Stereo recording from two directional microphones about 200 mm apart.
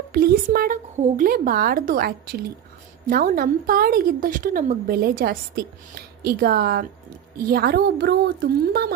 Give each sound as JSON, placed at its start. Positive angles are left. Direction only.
{"t": 0.1, "sound": "a woman's voice", "side_deg": -50}